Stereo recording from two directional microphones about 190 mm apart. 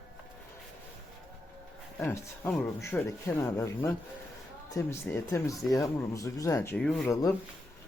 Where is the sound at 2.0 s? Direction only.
10° left (ahead or behind).